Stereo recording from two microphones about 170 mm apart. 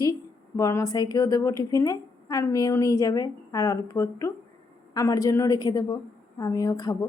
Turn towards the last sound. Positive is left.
turn(degrees=20)  # may be behind; listen again after turning